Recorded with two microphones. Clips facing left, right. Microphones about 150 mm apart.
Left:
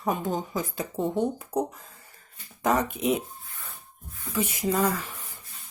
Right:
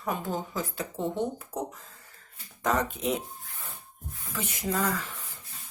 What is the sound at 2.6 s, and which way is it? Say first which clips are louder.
Speech: left 3 dB; 10° left (ahead or behind).